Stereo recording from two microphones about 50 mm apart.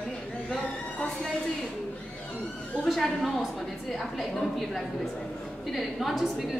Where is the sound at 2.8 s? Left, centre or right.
Centre.